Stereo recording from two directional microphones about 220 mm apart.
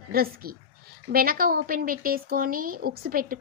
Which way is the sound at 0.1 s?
45° right (ahead or behind).